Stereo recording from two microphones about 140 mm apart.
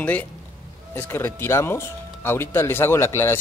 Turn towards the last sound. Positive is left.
turn(degrees=15)  # may be behind; listen again after turning